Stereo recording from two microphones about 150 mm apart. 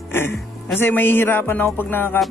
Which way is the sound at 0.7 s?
15° left (ahead or behind).